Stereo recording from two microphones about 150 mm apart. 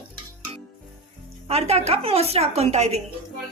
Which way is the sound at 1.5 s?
45° right (ahead or behind).